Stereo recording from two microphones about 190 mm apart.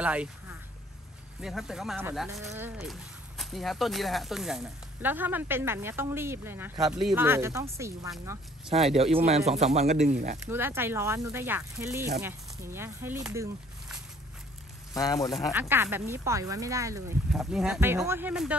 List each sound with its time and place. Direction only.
0.0 s speech: 5° right (ahead or behind)
2.8 s speech: centre (ahead or behind); by 8.1 s 15° right (ahead or behind)
9.1 s speech: 35° right (ahead or behind)
10.4 s speech: 10° right (ahead or behind)
15.0 s speech: 20° left (ahead or behind)
15.7 s speech: 10° right (ahead or behind)
17.3 s speech: centre (ahead or behind)